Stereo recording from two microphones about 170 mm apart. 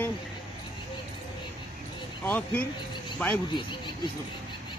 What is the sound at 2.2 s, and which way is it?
Speech, 5° left (ahead or behind).